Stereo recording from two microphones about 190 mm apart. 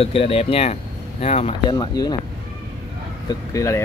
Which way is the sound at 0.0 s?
30° left (ahead or behind).